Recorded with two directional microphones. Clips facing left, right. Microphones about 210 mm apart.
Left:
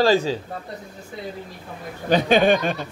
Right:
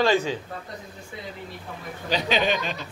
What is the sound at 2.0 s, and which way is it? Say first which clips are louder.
Speech: left 7 dB; 50° left (ahead or behind).